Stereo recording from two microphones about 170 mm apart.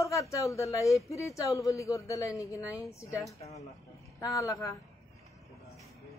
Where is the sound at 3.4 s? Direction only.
40° left (ahead or behind).